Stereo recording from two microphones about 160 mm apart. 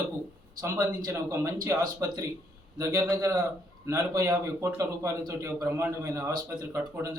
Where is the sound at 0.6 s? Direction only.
20° right (ahead or behind).